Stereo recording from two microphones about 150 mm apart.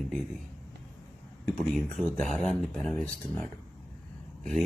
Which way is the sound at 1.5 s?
5° left (ahead or behind).